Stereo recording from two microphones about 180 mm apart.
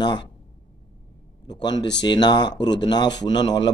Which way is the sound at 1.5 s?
25° left (ahead or behind).